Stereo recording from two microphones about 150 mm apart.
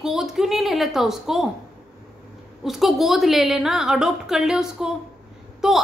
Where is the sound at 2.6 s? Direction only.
Centre (ahead or behind).